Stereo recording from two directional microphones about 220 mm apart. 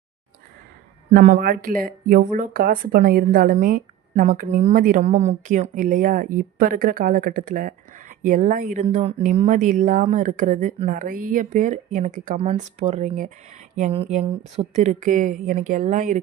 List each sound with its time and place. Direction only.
1.1 s speech: 40° right (ahead or behind)